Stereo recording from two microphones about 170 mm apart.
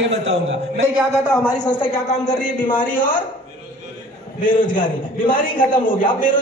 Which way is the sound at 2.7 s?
50° left (ahead or behind).